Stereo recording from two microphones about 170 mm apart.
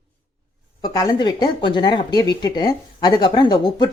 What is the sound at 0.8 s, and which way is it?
Speech, 20° left (ahead or behind).